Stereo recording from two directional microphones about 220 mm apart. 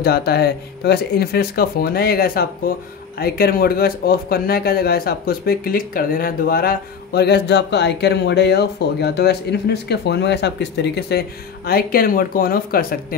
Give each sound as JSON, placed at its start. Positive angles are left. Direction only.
{"t": 0.0, "sound": "speech", "side_deg": 45}